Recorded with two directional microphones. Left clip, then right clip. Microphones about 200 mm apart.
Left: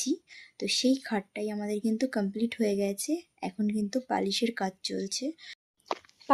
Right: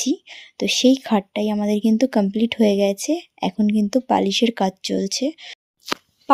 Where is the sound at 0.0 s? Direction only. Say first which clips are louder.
Right 9 dB; 35° right (ahead or behind).